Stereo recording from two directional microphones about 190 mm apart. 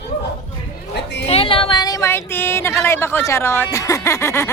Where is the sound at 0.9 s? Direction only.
65° left (ahead or behind).